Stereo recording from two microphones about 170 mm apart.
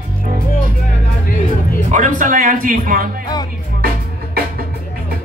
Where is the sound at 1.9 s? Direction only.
50° right (ahead or behind).